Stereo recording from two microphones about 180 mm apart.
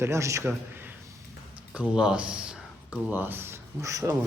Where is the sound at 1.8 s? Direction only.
5° right (ahead or behind).